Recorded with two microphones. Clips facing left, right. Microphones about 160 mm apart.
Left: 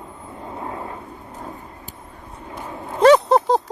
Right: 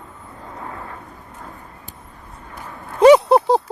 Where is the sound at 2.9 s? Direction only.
10° right (ahead or behind).